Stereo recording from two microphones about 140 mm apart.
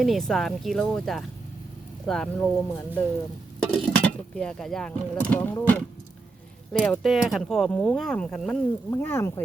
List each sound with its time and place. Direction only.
0.0 s speech: centre (ahead or behind)
7.0 s speech: centre (ahead or behind)
8.9 s speech: 15° left (ahead or behind)